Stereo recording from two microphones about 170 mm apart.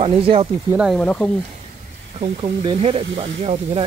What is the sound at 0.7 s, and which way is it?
Speech, 5° right (ahead or behind).